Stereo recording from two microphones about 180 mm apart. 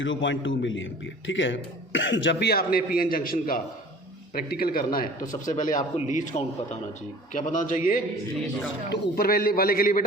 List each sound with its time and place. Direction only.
0.0 s a man's voice: 90° left; by 10.0 s 55° left (ahead or behind)